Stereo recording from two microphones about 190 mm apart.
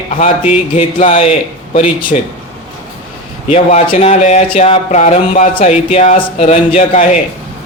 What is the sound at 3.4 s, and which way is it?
Speech, 30° left (ahead or behind).